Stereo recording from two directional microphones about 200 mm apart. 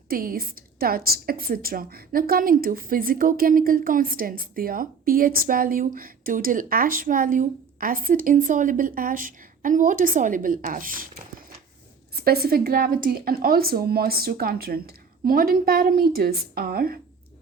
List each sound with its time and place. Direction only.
0.1 s a woman's voice: 45° right (ahead or behind)
12.1 s a woman's voice: 50° right (ahead or behind)